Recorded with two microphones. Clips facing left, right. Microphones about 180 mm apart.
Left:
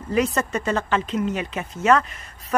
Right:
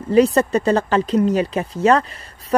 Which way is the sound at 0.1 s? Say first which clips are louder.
Right 8 dB; 35° right (ahead or behind).